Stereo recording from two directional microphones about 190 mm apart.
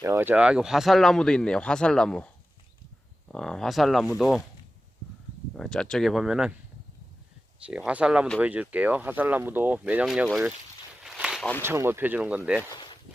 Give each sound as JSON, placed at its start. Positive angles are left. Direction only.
{"t": 0.0, "sound": "speech", "side_deg": -15}
{"t": 5.5, "sound": "speech", "side_deg": 5}
{"t": 7.6, "sound": "speech", "side_deg": -5}
{"t": 11.0, "sound": "a sound", "side_deg": 0}
{"t": 11.6, "sound": "speech", "side_deg": -10}
{"t": 12.7, "sound": "a sound", "side_deg": 25}